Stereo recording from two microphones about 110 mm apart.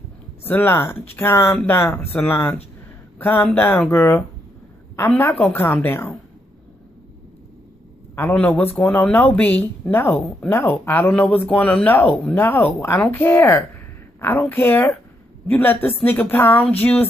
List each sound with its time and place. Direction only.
0.4 s a man's voice: 20° left (ahead or behind)
5.2 s speech: 20° left (ahead or behind)
8.4 s speech: 15° left (ahead or behind)